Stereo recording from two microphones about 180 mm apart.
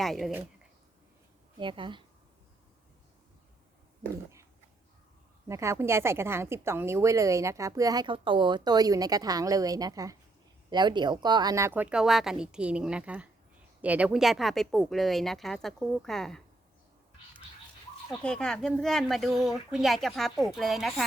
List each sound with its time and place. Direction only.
0.0 s speech: centre (ahead or behind)
1.5 s a woman's voice: 25° right (ahead or behind)
5.5 s a woman's voice: 15° right (ahead or behind); by 16.4 s centre (ahead or behind)
18.1 s speech: 5° left (ahead or behind)